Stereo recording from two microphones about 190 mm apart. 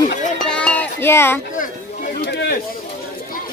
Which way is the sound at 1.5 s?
45° left (ahead or behind).